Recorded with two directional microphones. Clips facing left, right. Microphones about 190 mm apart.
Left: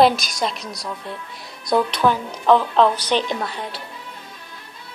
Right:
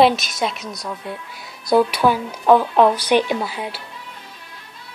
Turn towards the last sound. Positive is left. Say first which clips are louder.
# right 3 dB
turn(degrees=-5)  # may be behind; listen again after turning